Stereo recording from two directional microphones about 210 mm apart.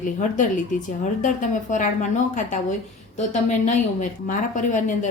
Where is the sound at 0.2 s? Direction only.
35° left (ahead or behind).